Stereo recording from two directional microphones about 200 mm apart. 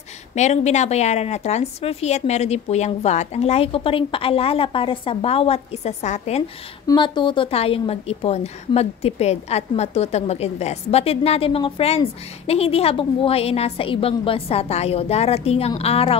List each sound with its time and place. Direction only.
0.3 s a woman's voice: 35° left (ahead or behind)
6.9 s a woman's voice: 25° left (ahead or behind)